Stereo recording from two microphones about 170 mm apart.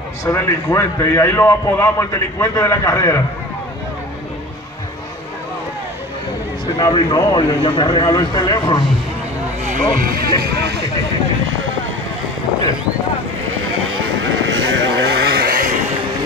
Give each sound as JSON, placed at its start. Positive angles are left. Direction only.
{"t": 0.2, "sound": "a man's voice", "side_deg": 15}
{"t": 6.8, "sound": "a man's voice", "side_deg": 25}
{"t": 9.7, "sound": "speech", "side_deg": -50}
{"t": 10.4, "sound": "speech", "side_deg": -75}
{"t": 11.4, "sound": "a sound", "side_deg": -90}
{"t": 14.5, "sound": "vehicle", "side_deg": -85}